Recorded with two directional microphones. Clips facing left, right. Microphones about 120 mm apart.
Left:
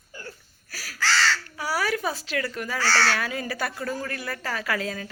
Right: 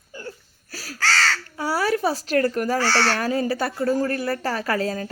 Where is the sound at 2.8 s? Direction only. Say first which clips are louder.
Left 1 dB; 25° right (ahead or behind).